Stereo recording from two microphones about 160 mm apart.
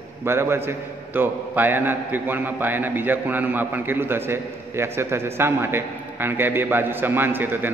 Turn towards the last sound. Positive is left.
turn(degrees=-10)  # may be behind; listen again after turning